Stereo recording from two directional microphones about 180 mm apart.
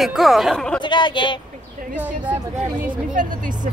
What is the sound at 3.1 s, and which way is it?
Speech, 45° right (ahead or behind).